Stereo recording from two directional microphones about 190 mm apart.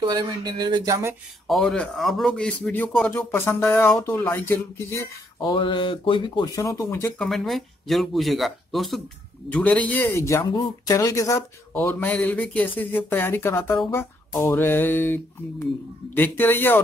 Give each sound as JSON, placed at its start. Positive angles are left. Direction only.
{"t": 0.0, "sound": "speech", "side_deg": -20}
{"t": 1.5, "sound": "speech", "side_deg": 5}
{"t": 5.4, "sound": "speech", "side_deg": 25}
{"t": 7.2, "sound": "speech", "side_deg": 0}